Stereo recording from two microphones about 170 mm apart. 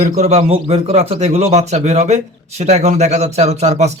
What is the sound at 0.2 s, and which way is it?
A man's voice, 40° right (ahead or behind).